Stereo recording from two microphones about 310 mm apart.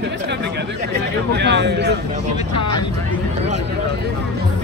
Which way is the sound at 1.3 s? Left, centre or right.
Right.